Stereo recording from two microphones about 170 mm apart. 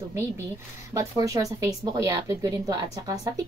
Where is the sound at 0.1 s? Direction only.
15° right (ahead or behind).